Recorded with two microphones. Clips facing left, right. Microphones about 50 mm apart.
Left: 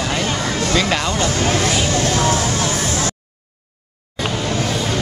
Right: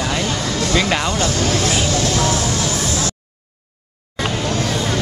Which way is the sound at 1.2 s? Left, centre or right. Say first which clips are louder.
Left 1 dB; left.